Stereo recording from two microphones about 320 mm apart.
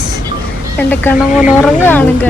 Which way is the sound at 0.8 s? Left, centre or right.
Centre.